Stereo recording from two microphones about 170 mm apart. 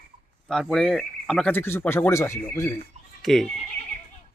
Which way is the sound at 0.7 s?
5° left (ahead or behind).